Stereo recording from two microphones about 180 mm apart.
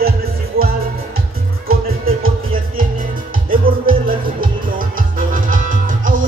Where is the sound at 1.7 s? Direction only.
55° right (ahead or behind).